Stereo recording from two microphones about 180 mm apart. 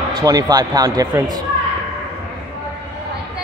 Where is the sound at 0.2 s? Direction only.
20° right (ahead or behind).